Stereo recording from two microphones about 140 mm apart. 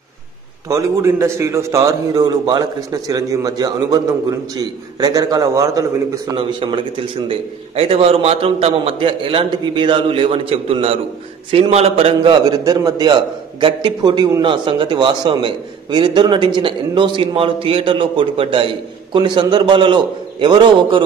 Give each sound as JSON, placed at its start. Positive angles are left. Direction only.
{"t": 0.7, "sound": "a man's voice", "side_deg": -20}
{"t": 6.3, "sound": "a man's voice", "side_deg": -35}
{"t": 12.4, "sound": "a man's voice", "side_deg": -25}